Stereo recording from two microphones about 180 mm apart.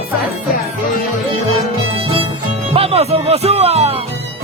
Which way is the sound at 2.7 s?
35° right (ahead or behind).